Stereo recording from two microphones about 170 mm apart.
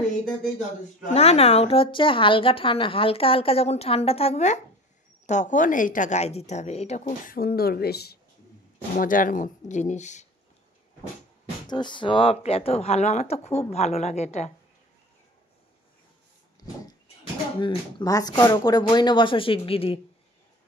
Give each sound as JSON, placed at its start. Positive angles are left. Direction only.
{"t": 1.0, "sound": "a woman's voice", "side_deg": 40}
{"t": 7.2, "sound": "speech", "side_deg": 65}
{"t": 8.9, "sound": "a woman's voice", "side_deg": 50}
{"t": 11.6, "sound": "speech", "side_deg": 25}
{"t": 17.6, "sound": "speech", "side_deg": 30}